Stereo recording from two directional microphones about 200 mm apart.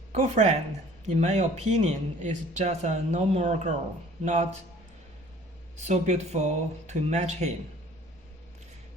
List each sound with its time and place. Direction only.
0.1 s speech: 35° right (ahead or behind)
5.7 s speech: 35° right (ahead or behind)